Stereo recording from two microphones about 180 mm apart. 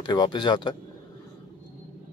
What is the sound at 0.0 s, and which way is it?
Speech, 25° left (ahead or behind).